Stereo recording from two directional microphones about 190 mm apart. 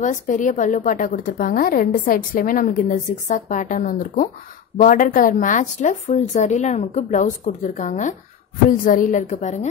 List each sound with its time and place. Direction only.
0.0 s a woman's voice: 40° left (ahead or behind)